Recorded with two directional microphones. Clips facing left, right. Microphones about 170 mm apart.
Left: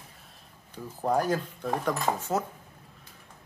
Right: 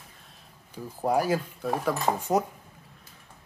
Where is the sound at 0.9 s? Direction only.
10° right (ahead or behind).